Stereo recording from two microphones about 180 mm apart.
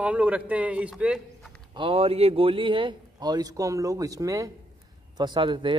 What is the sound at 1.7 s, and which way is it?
A man's voice, 30° right (ahead or behind).